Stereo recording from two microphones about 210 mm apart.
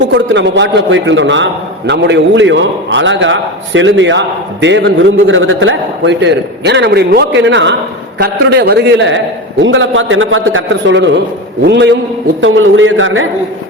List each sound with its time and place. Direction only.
0.1 s a man's voice: 55° right (ahead or behind)
12.4 s a man's voice: 65° right (ahead or behind)